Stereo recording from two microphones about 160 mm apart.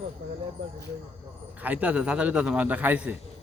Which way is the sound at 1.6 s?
10° right (ahead or behind).